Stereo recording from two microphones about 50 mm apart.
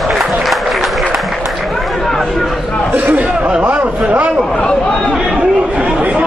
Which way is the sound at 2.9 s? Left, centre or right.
Right.